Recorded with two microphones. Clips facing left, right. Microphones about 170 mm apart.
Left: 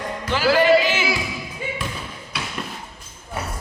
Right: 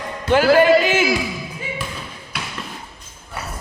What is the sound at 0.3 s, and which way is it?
Music, 50° right (ahead or behind).